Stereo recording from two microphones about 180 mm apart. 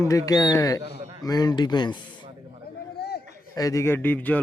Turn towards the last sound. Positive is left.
turn(degrees=10)  # may be behind; listen again after turning